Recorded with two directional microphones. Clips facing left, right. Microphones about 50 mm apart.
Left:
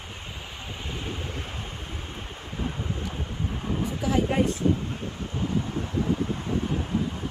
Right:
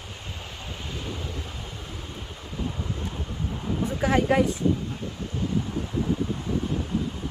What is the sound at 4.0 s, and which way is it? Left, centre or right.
Speech, right.